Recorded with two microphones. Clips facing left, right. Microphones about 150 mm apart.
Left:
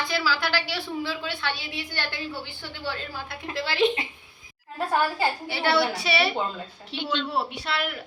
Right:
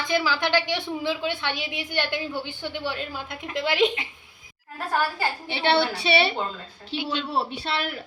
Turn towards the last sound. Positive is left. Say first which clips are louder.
# right 1 dB
turn(degrees=-30)  # may be behind; listen again after turning